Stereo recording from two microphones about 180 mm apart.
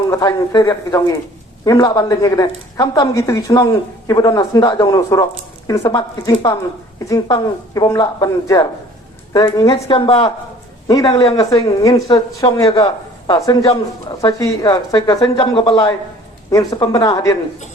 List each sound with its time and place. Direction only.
0.1 s a woman's voice: 20° left (ahead or behind)